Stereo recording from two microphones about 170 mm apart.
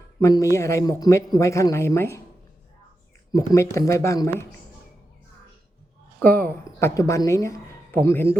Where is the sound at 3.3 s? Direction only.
20° left (ahead or behind).